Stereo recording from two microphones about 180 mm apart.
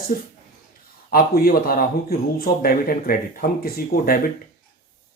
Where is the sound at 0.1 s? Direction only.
50° left (ahead or behind).